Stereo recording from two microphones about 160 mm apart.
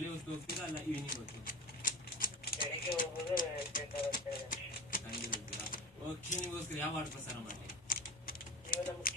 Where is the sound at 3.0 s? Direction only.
60° left (ahead or behind).